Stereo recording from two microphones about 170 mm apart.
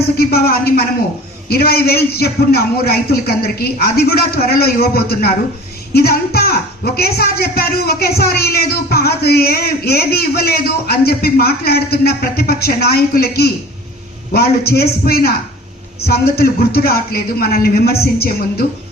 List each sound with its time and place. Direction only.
0.2 s a man's voice: 65° left (ahead or behind)